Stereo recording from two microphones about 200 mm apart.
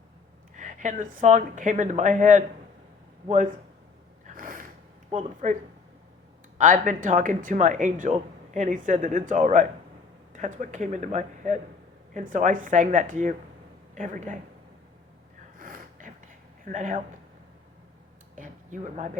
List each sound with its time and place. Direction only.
0.5 s speech: 40° right (ahead or behind)
4.4 s a sound: 45° right (ahead or behind)
5.1 s speech: 35° right (ahead or behind)
6.6 s speech: 40° right (ahead or behind)
15.5 s a sound: 45° right (ahead or behind)
18.3 s speech: 40° right (ahead or behind)